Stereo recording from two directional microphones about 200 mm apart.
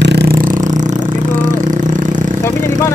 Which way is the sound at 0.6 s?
20° right (ahead or behind).